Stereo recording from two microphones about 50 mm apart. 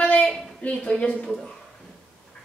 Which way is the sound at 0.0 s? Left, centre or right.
Left.